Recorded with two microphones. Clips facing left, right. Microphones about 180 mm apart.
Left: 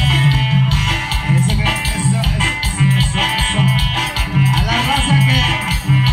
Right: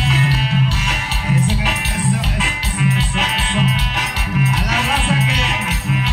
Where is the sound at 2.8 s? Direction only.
25° left (ahead or behind).